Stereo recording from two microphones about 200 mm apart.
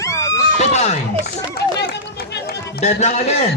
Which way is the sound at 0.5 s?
35° left (ahead or behind).